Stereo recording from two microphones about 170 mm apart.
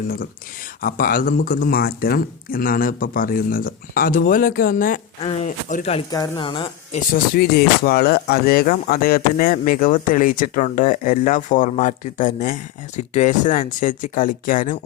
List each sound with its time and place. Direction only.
0.8 s speech: 55° left (ahead or behind); by 6.1 s 40° left (ahead or behind)
6.1 s speech: 25° left (ahead or behind)
7.1 s speech: 65° left (ahead or behind)